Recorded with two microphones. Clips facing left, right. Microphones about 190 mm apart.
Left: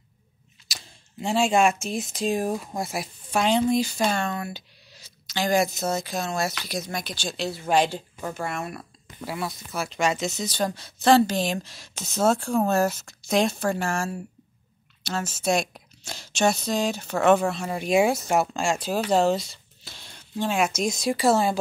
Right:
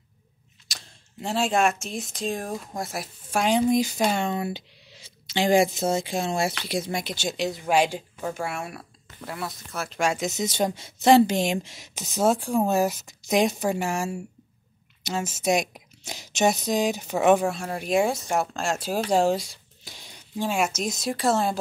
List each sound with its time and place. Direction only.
0.7 s a sound: centre (ahead or behind)
1.8 s speech: centre (ahead or behind)
9.2 s speech: 5° left (ahead or behind); by 17.6 s 10° right (ahead or behind)
17.6 s speech: centre (ahead or behind)